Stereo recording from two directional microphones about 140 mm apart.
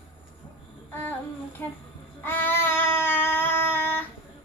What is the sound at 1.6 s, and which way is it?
Speech, 20° left (ahead or behind).